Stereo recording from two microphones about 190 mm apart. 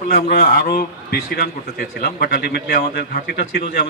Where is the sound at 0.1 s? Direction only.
55° left (ahead or behind).